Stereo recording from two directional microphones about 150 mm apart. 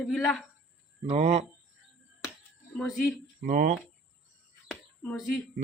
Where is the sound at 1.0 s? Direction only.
40° right (ahead or behind).